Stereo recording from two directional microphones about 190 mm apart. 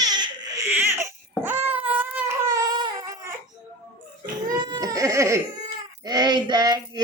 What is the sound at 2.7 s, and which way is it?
Baby cry, 20° right (ahead or behind).